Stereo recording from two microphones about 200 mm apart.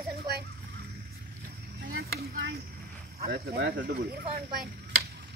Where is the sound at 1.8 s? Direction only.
65° right (ahead or behind).